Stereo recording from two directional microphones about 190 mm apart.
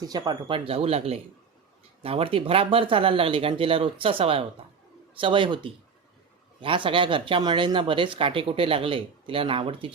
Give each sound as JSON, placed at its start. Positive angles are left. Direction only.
{"t": 0.0, "sound": "speech", "side_deg": -20}